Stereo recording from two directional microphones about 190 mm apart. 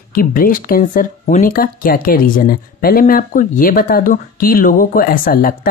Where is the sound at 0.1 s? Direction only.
50° left (ahead or behind).